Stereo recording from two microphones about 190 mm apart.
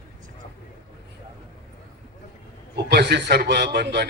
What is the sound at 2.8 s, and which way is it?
A man's voice, 60° right (ahead or behind).